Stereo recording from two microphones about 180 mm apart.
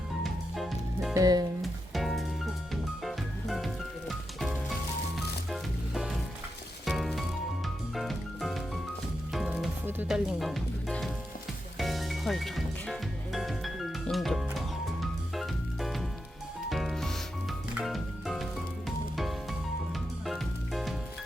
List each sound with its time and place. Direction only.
0.2 s music: centre (ahead or behind)
1.1 s speech: 20° right (ahead or behind)
1.6 s music: centre (ahead or behind)
5.5 s music: centre (ahead or behind)
10.4 s music: centre (ahead or behind)